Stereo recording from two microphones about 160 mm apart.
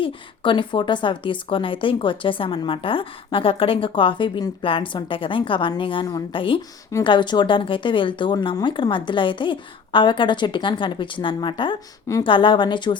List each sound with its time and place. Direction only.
0.0 s a woman's voice: 30° left (ahead or behind)